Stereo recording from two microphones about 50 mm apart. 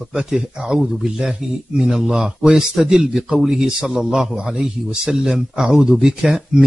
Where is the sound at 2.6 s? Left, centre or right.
Centre.